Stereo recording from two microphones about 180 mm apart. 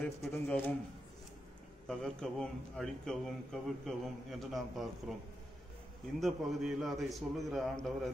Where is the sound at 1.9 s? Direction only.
5° left (ahead or behind).